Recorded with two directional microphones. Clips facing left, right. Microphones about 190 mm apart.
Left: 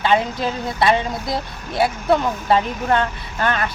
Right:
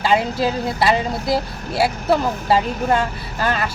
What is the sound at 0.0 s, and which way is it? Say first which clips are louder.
Speech: right 1 dB; 5° right (ahead or behind).